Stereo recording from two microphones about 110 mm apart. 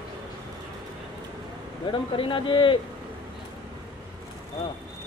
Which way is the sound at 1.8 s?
50° left (ahead or behind).